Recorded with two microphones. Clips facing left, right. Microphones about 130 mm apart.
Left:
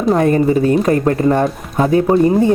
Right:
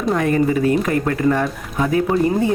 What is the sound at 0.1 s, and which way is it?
Speech, 35° left (ahead or behind).